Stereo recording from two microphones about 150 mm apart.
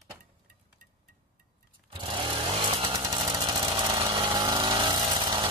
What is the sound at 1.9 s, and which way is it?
Chainsaw, 35° right (ahead or behind).